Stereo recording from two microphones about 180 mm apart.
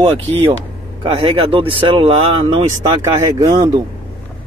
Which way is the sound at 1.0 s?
30° right (ahead or behind).